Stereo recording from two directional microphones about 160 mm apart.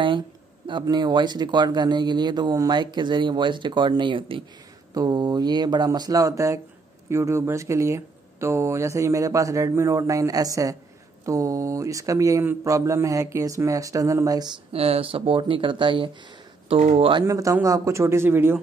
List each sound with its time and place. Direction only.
0.7 s speech: 30° right (ahead or behind)
14.7 s speech: 40° right (ahead or behind)
17.3 s speech: 20° right (ahead or behind)